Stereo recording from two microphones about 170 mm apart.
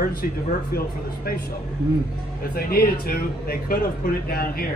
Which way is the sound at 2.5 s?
60° left (ahead or behind).